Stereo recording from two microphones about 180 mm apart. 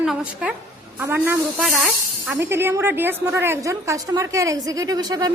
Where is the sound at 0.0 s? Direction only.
5° right (ahead or behind).